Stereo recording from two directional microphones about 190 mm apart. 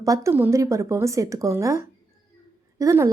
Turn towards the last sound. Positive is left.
turn(degrees=-15)  # may be behind; listen again after turning